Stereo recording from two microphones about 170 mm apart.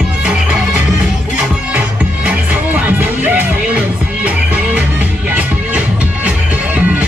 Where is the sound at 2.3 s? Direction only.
10° right (ahead or behind).